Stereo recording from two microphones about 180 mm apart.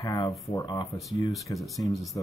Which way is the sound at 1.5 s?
20° left (ahead or behind).